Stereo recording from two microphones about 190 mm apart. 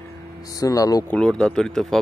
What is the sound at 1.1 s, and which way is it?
Speech, 5° left (ahead or behind).